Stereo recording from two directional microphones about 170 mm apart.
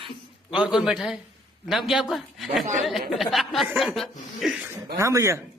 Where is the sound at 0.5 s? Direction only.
5° right (ahead or behind).